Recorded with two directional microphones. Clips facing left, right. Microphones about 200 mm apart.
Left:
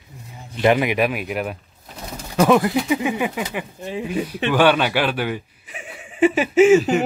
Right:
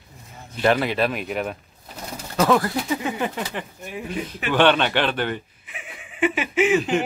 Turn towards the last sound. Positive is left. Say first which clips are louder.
# left 7 dB
turn(degrees=40)  # may be behind; listen again after turning